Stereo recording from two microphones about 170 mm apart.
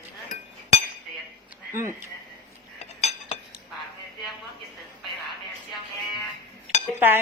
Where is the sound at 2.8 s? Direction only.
40° left (ahead or behind).